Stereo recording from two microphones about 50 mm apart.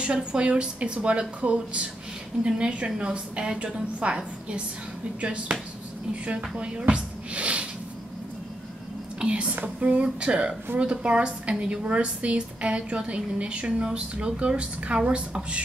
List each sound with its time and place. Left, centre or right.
0.0 s a woman's voice: right
9.2 s a woman's voice: right